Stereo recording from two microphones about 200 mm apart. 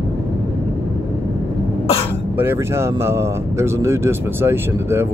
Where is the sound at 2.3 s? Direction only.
10° right (ahead or behind).